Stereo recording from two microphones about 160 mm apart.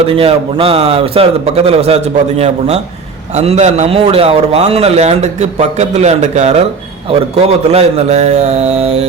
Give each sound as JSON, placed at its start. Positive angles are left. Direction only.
{"t": 0.0, "sound": "a man's voice", "side_deg": -35}